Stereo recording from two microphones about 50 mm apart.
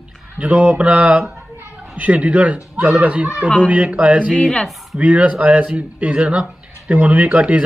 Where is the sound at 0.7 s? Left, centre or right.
Right.